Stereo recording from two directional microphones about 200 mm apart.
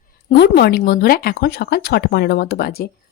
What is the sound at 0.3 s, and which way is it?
Speech, 55° left (ahead or behind).